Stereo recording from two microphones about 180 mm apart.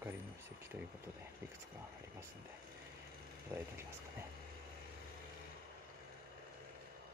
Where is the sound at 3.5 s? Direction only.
15° right (ahead or behind).